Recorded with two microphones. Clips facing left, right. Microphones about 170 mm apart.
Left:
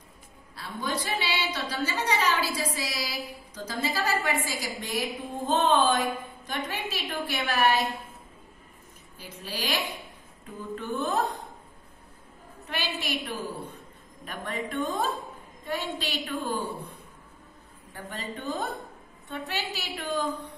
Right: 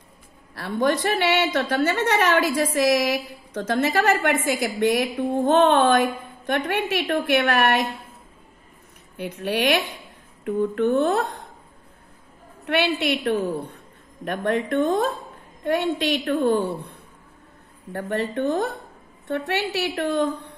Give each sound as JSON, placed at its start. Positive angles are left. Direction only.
{"t": 0.6, "sound": "speech", "side_deg": -70}
{"t": 9.1, "sound": "speech", "side_deg": -75}
{"t": 12.6, "sound": "speech", "side_deg": -70}
{"t": 17.9, "sound": "speech", "side_deg": -65}